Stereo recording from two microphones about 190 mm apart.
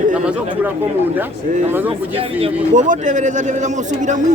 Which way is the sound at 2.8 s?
40° right (ahead or behind).